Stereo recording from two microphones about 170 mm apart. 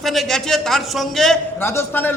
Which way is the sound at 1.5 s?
15° left (ahead or behind).